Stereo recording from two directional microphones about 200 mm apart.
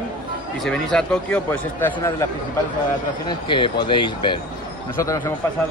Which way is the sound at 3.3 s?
25° left (ahead or behind).